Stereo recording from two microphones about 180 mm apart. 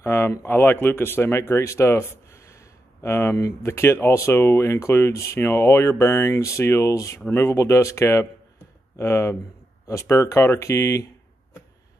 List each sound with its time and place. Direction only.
0.0 s speech: 15° left (ahead or behind)